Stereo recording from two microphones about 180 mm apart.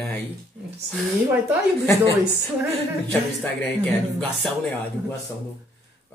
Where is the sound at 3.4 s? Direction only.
5° left (ahead or behind).